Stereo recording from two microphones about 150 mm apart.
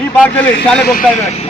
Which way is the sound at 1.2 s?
45° left (ahead or behind).